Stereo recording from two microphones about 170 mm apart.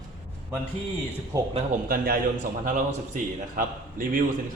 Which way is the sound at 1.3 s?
20° right (ahead or behind).